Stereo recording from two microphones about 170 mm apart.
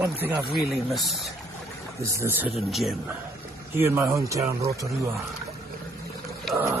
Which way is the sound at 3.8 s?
15° right (ahead or behind).